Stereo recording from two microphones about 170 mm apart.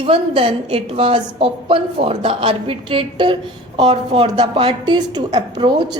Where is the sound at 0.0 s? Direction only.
30° right (ahead or behind).